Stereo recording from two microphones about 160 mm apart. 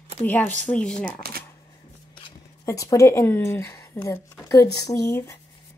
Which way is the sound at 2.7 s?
20° left (ahead or behind).